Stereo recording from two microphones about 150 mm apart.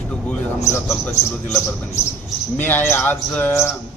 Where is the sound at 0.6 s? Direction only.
20° left (ahead or behind).